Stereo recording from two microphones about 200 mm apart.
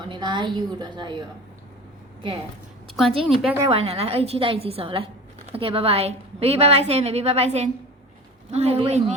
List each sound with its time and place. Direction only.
0.0 s a woman's voice: 20° right (ahead or behind)
2.9 s a woman's voice: centre (ahead or behind)
3.7 s a woman's voice: 30° right (ahead or behind)